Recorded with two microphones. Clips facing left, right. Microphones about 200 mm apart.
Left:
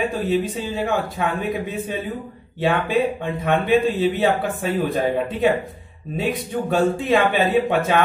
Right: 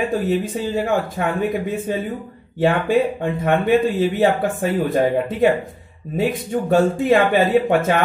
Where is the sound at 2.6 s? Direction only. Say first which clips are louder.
Right 3 dB; 50° right (ahead or behind).